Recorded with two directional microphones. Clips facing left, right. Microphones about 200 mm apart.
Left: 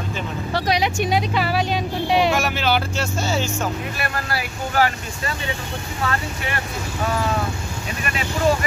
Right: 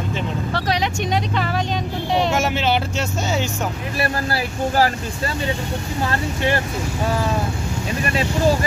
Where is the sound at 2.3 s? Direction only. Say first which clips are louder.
Right 1 dB; 25° right (ahead or behind).